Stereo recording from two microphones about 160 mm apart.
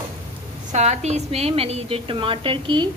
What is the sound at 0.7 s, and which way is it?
A woman's voice, 45° right (ahead or behind).